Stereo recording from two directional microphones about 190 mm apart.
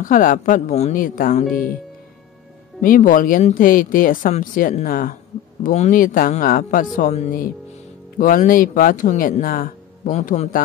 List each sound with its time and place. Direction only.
0.0 s speech: 45° left (ahead or behind)
2.8 s speech: 45° left (ahead or behind)